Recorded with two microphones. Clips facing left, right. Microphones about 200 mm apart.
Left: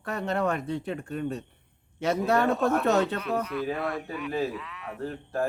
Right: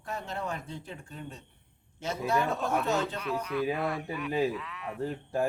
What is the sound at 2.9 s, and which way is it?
Speech, 65° left (ahead or behind).